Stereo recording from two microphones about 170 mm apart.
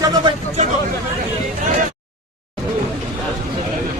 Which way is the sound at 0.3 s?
40° right (ahead or behind).